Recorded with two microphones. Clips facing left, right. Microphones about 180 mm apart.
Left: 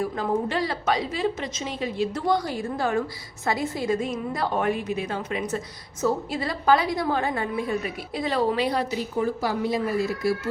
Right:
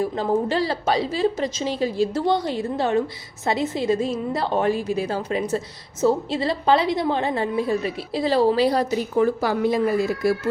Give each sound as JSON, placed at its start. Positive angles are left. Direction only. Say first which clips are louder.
{"t": 0.0, "sound": "a woman's voice", "louder": "right 3 dB", "side_deg": -30}
{"t": 9.1, "sound": "a woman's voice", "louder": "right 5 dB", "side_deg": -65}